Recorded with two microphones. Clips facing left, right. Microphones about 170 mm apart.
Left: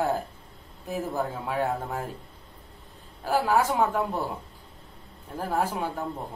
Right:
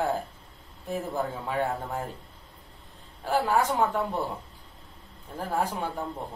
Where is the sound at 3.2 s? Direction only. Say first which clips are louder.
Left 1 dB; 5° left (ahead or behind).